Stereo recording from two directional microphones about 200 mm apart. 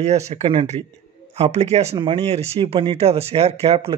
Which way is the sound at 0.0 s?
35° right (ahead or behind).